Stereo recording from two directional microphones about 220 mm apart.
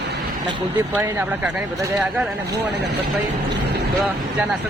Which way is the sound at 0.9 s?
10° right (ahead or behind).